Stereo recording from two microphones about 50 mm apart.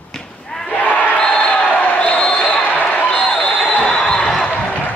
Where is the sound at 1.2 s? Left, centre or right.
Left.